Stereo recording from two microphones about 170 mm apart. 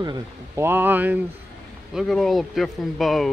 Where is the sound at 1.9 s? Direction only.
Centre (ahead or behind).